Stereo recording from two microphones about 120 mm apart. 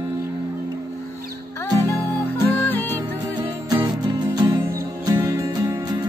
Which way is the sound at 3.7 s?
35° right (ahead or behind).